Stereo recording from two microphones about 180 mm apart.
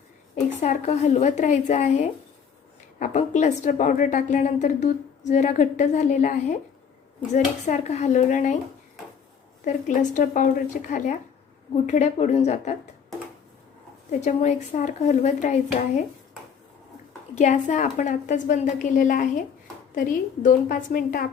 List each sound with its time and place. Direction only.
0.6 s a woman's voice: 40° left (ahead or behind)
9.6 s a woman's voice: 45° left (ahead or behind)
14.1 s a woman's voice: 40° left (ahead or behind)
17.3 s a woman's voice: 40° left (ahead or behind)